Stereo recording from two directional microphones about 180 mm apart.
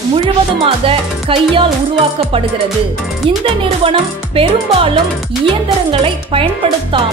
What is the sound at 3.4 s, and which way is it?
Speech, 30° right (ahead or behind).